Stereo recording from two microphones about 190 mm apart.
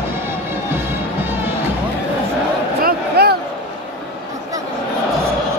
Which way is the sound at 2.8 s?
55° right (ahead or behind).